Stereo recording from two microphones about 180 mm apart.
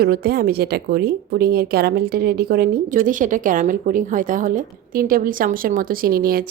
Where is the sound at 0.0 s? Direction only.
60° right (ahead or behind).